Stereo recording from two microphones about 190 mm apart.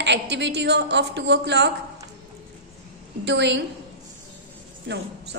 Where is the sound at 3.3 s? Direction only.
70° right (ahead or behind).